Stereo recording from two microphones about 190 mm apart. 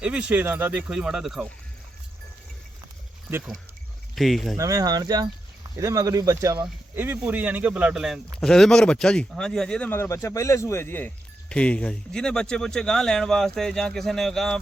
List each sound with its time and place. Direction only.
0.0 s speech: 5° right (ahead or behind)
3.2 s speech: 10° right (ahead or behind)
4.1 s speech: centre (ahead or behind)
4.5 s speech: 15° right (ahead or behind); by 14.6 s centre (ahead or behind)